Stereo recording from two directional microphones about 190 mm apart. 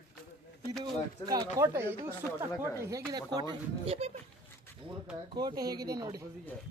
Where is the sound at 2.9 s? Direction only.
20° right (ahead or behind).